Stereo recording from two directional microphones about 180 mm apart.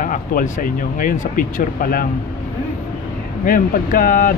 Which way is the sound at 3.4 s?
50° left (ahead or behind).